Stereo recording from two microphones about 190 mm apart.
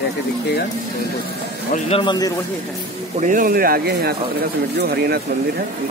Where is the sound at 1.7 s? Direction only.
30° left (ahead or behind).